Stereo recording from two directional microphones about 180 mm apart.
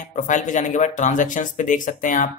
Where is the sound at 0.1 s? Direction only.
45° left (ahead or behind).